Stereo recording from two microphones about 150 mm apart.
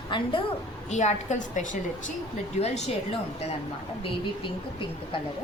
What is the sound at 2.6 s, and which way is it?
Speech, 45° left (ahead or behind).